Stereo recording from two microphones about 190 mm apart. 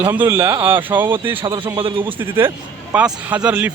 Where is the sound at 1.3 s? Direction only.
30° right (ahead or behind).